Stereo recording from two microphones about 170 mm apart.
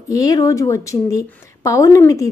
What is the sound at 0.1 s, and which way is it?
A woman's voice, 20° left (ahead or behind).